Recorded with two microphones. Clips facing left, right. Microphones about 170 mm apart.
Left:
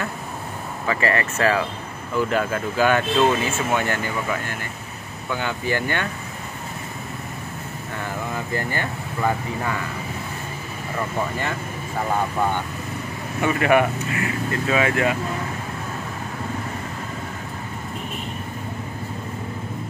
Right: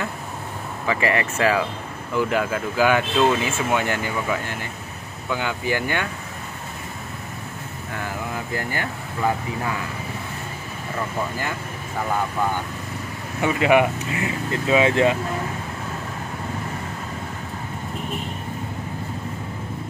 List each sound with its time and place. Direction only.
0.8 s speech: 15° right (ahead or behind)
8.5 s speech: 10° right (ahead or behind)
13.4 s speech: 15° right (ahead or behind)